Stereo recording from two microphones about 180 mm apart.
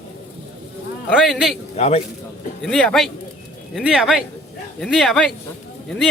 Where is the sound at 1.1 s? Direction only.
Centre (ahead or behind).